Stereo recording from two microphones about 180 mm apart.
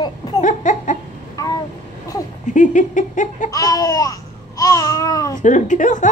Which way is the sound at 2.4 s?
45° left (ahead or behind).